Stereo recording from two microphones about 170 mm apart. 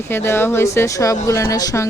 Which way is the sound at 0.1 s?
15° left (ahead or behind).